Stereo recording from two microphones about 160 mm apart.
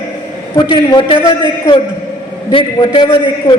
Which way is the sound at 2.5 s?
30° left (ahead or behind).